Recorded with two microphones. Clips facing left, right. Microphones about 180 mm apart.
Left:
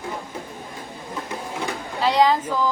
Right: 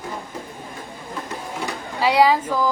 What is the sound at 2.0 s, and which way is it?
Speech, 10° right (ahead or behind).